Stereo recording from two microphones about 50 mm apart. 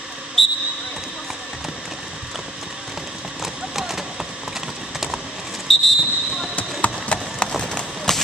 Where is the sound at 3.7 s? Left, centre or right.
Centre.